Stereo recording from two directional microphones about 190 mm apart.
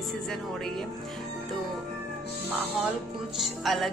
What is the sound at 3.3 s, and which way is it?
Speech, centre (ahead or behind).